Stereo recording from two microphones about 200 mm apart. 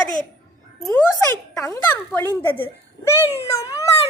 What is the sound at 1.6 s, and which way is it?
A child's voice, 15° left (ahead or behind).